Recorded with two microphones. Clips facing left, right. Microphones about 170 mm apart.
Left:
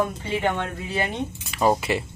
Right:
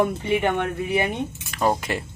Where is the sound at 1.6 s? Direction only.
5° left (ahead or behind).